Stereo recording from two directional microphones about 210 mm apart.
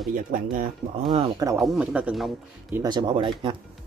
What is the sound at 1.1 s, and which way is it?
Speech, 20° right (ahead or behind).